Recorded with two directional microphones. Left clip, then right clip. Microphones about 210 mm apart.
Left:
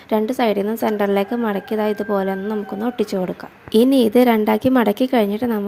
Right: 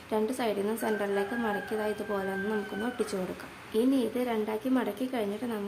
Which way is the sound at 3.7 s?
45° left (ahead or behind).